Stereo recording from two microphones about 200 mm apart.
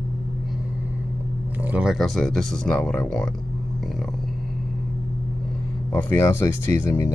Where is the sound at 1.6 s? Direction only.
5° right (ahead or behind).